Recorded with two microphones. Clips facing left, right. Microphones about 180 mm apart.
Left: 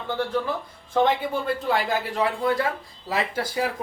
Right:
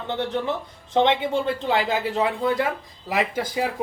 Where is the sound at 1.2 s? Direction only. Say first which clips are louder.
Right 2 dB; 20° right (ahead or behind).